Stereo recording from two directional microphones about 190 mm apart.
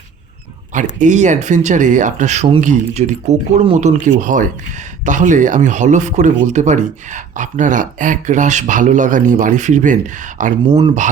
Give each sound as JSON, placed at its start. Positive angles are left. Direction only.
{"t": 0.9, "sound": "speech", "side_deg": -40}
{"t": 10.7, "sound": "speech", "side_deg": -20}